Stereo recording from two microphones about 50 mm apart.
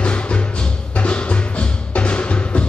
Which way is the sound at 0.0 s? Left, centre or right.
Left.